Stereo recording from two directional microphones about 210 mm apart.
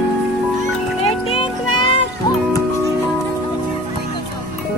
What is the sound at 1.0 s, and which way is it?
Music, 25° left (ahead or behind).